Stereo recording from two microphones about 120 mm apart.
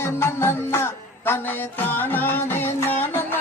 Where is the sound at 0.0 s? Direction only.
20° left (ahead or behind).